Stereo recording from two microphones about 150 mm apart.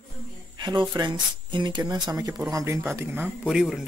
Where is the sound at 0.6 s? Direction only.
30° right (ahead or behind); by 3.3 s 15° right (ahead or behind).